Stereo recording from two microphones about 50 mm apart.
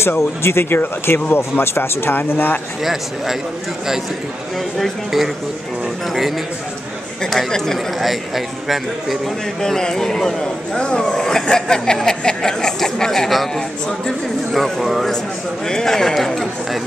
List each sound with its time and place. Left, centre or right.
0.0 s speech: left
2.8 s speech: centre
7.2 s speech: centre
8.0 s a man's voice: centre
9.6 s speech: centre